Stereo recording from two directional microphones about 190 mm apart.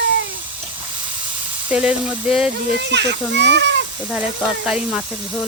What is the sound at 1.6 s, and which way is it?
Speech, 5° right (ahead or behind).